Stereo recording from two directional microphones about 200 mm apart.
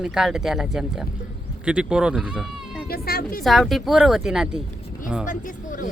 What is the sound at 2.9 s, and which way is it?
Speech, 50° left (ahead or behind).